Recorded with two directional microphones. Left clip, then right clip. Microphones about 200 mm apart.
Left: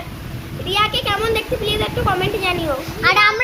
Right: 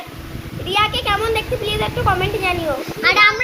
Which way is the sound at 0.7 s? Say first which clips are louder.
Right 1 dB; 15° left (ahead or behind).